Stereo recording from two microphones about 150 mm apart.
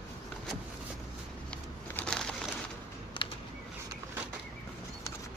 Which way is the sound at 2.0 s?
5° left (ahead or behind).